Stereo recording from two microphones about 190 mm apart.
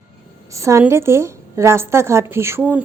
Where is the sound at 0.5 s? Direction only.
15° right (ahead or behind).